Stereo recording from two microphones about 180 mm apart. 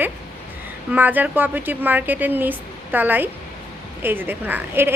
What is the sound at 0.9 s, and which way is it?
A woman's voice, 10° right (ahead or behind).